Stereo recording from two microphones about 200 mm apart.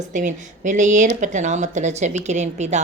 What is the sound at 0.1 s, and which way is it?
Speech, 40° right (ahead or behind).